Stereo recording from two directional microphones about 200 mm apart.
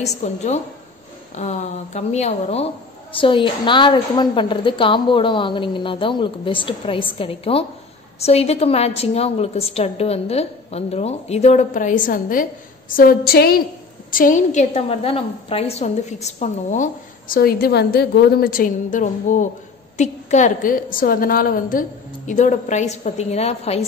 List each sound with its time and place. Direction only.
0.0 s a woman's voice: 35° left (ahead or behind)